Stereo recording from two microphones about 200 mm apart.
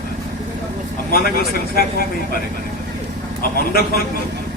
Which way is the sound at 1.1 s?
50° left (ahead or behind).